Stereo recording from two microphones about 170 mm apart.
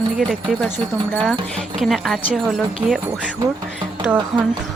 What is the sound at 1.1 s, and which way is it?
Speech, 5° left (ahead or behind).